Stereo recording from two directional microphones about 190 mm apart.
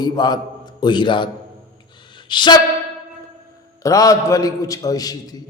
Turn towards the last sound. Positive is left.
turn(degrees=20)  # may be behind; listen again after turning